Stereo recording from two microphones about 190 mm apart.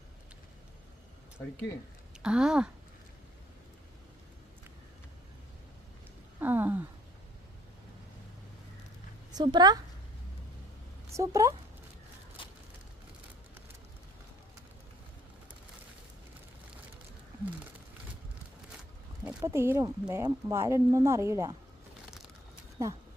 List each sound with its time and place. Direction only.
2.2 s speech: 5° right (ahead or behind)
6.4 s a sound: 10° right (ahead or behind)
9.3 s a woman's voice: 25° right (ahead or behind)
11.1 s speech: 15° right (ahead or behind)
12.4 s a sound: 25° left (ahead or behind)
19.2 s speech: 10° right (ahead or behind)
22.8 s speech: 15° right (ahead or behind)